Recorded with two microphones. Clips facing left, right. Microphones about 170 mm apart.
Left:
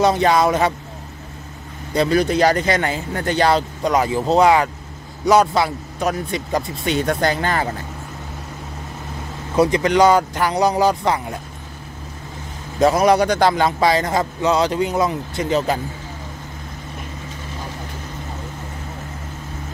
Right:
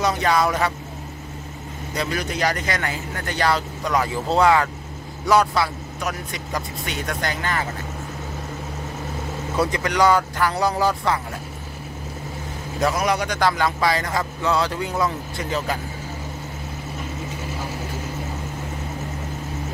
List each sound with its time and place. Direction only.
0.0 s a man's voice: 25° left (ahead or behind)
2.0 s a man's voice: 30° left (ahead or behind)
9.6 s a man's voice: 20° left (ahead or behind)
12.8 s a man's voice: 30° left (ahead or behind)